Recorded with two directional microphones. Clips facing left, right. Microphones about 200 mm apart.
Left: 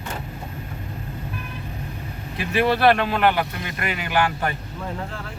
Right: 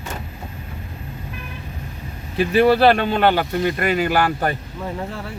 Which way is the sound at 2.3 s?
30° right (ahead or behind).